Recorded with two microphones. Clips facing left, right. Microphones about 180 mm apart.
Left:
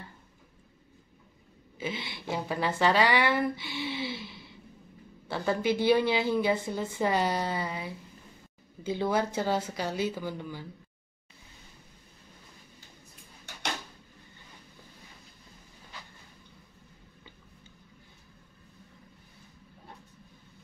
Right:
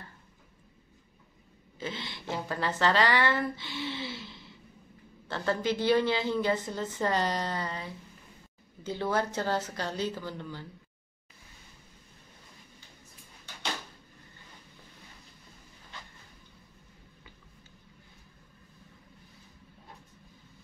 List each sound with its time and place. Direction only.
1.8 s a woman's voice: 10° left (ahead or behind)